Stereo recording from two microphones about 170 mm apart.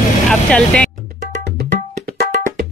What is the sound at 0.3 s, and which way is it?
Speech, 5° left (ahead or behind).